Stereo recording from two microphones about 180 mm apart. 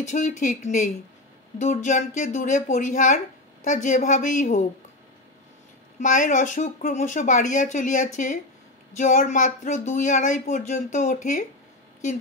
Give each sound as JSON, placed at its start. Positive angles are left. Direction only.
{"t": 0.0, "sound": "speech", "side_deg": 45}
{"t": 5.9, "sound": "speech", "side_deg": 45}